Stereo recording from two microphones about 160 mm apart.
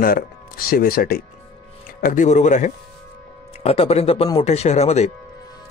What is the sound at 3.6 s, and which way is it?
Speech, 40° left (ahead or behind).